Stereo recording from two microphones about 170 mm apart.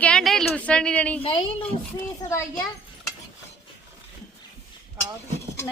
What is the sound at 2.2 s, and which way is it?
Speech, 20° left (ahead or behind).